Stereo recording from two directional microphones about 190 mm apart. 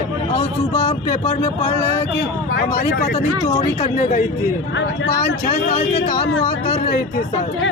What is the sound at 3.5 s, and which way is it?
Speech, 30° left (ahead or behind).